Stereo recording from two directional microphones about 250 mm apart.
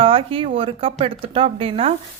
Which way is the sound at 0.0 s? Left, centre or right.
Right.